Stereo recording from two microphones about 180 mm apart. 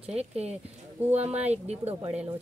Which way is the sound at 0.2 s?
35° right (ahead or behind).